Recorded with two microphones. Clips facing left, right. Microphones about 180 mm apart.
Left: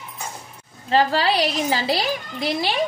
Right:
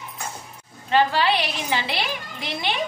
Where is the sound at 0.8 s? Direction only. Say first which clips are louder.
Left 1 dB; 35° left (ahead or behind).